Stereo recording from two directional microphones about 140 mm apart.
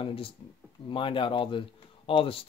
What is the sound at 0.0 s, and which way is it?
Speech, 40° left (ahead or behind).